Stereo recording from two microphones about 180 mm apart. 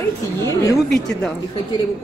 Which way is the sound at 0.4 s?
15° left (ahead or behind).